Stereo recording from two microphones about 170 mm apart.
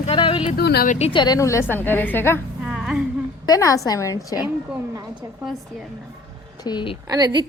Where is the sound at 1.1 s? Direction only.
20° left (ahead or behind).